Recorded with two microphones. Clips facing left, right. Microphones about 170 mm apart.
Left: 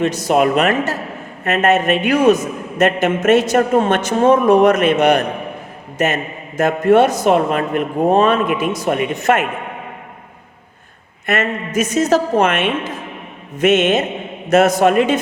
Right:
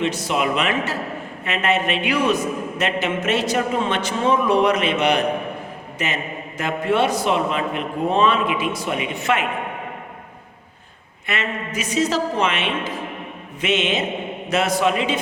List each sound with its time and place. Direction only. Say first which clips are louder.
0.0 s a man's voice: left 7 dB; 45° left (ahead or behind)
11.3 s a man's voice: left 7 dB; 45° left (ahead or behind)